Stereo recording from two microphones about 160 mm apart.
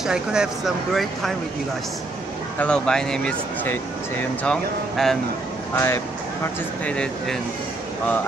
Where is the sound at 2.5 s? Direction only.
5° left (ahead or behind).